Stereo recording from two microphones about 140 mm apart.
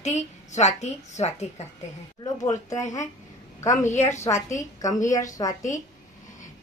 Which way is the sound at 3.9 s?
55° left (ahead or behind).